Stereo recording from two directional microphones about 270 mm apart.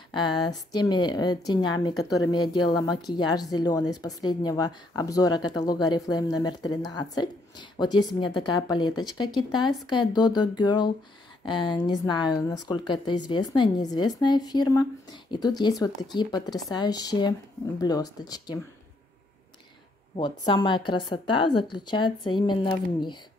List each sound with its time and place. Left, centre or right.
0.5 s speech: centre
20.2 s speech: centre